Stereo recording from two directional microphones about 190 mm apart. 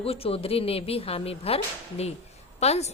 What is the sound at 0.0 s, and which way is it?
A woman's voice, 30° left (ahead or behind).